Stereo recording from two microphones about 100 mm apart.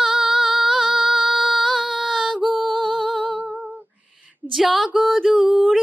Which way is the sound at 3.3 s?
15° right (ahead or behind).